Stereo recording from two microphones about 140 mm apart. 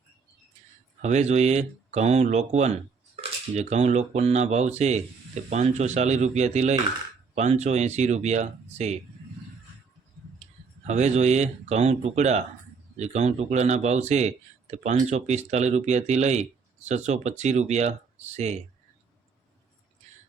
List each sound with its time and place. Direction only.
1.0 s a man's voice: 55° right (ahead or behind)
10.8 s a man's voice: 55° right (ahead or behind)